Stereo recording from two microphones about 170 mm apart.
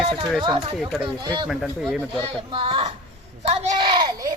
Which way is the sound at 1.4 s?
Centre (ahead or behind).